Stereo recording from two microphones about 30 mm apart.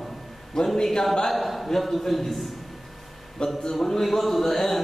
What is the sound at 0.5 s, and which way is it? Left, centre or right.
Speech, centre.